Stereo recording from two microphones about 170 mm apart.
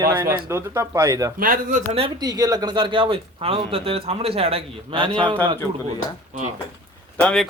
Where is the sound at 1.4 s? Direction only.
55° right (ahead or behind).